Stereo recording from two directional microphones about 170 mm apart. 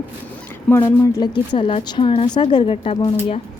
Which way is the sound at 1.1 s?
25° left (ahead or behind).